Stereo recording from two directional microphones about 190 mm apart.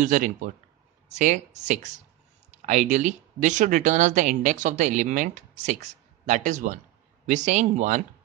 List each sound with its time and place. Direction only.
0.0 s speech: 45° right (ahead or behind)